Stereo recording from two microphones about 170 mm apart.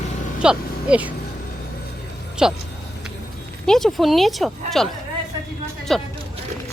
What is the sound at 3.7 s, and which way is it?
Speech, 5° left (ahead or behind).